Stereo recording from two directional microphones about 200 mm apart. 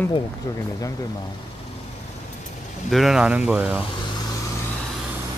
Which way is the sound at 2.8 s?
Centre (ahead or behind).